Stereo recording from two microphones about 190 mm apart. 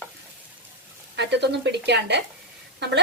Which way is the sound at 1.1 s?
65° right (ahead or behind).